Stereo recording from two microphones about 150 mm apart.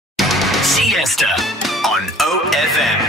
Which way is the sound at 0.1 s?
Centre (ahead or behind).